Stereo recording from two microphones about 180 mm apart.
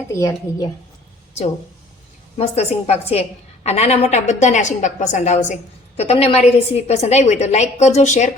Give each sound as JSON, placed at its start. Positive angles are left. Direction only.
{"t": 0.1, "sound": "speech", "side_deg": 15}
{"t": 2.4, "sound": "a woman's voice", "side_deg": 35}